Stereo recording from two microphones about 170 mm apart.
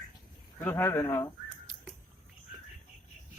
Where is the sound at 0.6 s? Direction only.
15° left (ahead or behind).